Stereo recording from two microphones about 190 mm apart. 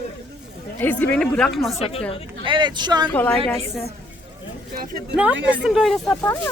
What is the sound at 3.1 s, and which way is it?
Speech, 10° left (ahead or behind).